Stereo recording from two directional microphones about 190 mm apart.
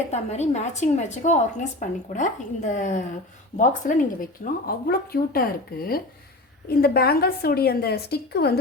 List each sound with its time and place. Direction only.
0.1 s a woman's voice: 35° left (ahead or behind); by 8.5 s 60° left (ahead or behind)